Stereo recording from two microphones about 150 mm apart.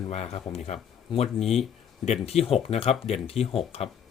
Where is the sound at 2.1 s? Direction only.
45° left (ahead or behind).